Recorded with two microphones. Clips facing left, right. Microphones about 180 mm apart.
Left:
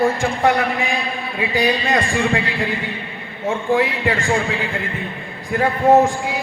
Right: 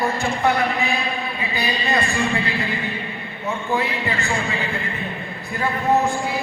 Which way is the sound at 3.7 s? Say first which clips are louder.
Left 6 dB; 90° left.